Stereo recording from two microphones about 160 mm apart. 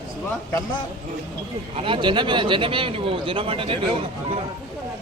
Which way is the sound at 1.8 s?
30° right (ahead or behind).